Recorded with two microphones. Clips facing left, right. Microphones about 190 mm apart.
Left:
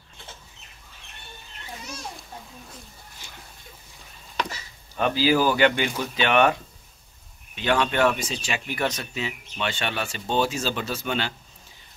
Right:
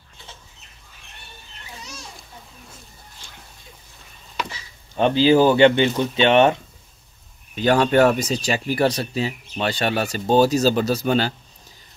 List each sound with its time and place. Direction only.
4.9 s speech: 25° right (ahead or behind)
7.5 s speech: 40° right (ahead or behind)